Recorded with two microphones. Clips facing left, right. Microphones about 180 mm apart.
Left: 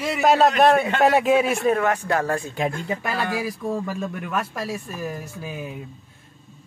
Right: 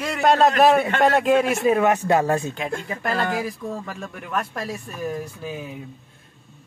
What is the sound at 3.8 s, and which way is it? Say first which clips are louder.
A man's voice: left 5 dB; 15° left (ahead or behind).